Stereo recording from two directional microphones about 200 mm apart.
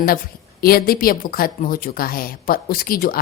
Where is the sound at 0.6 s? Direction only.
50° left (ahead or behind).